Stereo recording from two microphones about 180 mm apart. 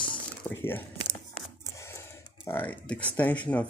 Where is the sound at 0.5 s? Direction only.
10° left (ahead or behind).